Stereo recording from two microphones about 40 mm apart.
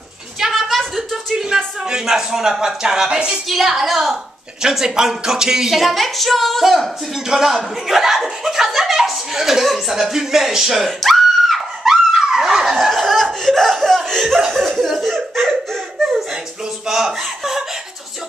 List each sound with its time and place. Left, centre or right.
0.6 s a sound: centre
0.9 s a sound: centre
1.9 s a woman's voice: centre
3.4 s a woman's voice: centre
4.6 s a woman's voice: centre
7.2 s a woman's voice: centre
10.9 s screaming: centre
11.9 s snicker: centre
14.5 s laughter: centre
16.8 s chuckle: centre